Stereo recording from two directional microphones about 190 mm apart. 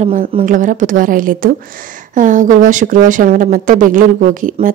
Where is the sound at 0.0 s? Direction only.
45° right (ahead or behind).